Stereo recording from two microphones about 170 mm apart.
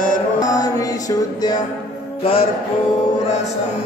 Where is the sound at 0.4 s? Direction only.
20° left (ahead or behind).